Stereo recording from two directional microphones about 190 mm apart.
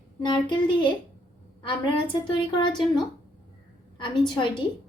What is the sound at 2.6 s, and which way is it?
Speech, 25° left (ahead or behind).